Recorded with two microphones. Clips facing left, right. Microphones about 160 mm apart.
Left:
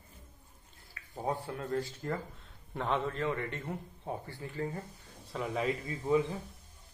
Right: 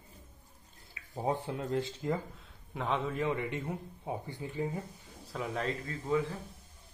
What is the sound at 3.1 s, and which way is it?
Speech, 15° right (ahead or behind).